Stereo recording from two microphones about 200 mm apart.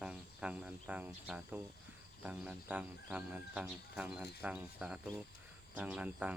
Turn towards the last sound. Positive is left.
turn(degrees=-5)  # may be behind; listen again after turning